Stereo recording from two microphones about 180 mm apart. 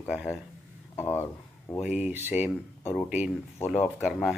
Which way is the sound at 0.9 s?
15° left (ahead or behind).